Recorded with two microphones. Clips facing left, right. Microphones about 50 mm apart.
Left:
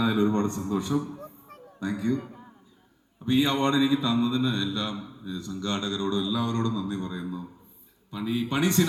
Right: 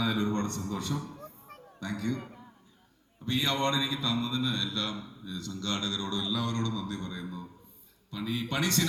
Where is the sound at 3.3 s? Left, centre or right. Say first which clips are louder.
Left 6 dB; centre.